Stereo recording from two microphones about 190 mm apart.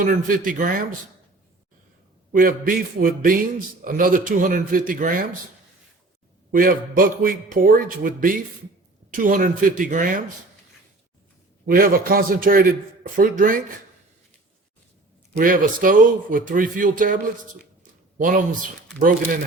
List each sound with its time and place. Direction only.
0.0 s speech: 45° right (ahead or behind)
2.3 s speech: 45° right (ahead or behind)
6.5 s speech: 50° right (ahead or behind)
11.6 s speech: 50° right (ahead or behind)
15.4 s speech: 45° right (ahead or behind)